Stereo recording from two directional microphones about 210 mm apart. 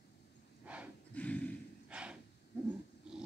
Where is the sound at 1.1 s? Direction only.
5° left (ahead or behind).